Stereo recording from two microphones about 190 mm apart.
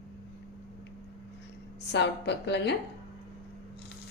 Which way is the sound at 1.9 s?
65° left (ahead or behind).